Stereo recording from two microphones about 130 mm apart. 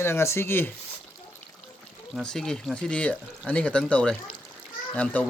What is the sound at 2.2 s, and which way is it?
Speech, 5° left (ahead or behind).